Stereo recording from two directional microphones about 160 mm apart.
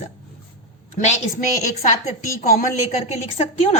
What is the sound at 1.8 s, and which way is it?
A woman's voice, 50° left (ahead or behind).